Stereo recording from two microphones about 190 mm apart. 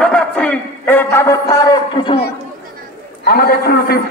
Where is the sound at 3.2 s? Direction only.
50° left (ahead or behind).